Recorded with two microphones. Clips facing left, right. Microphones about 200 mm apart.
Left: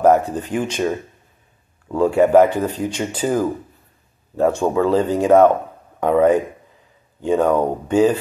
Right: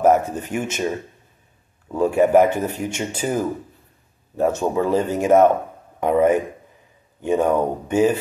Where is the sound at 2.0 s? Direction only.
20° right (ahead or behind).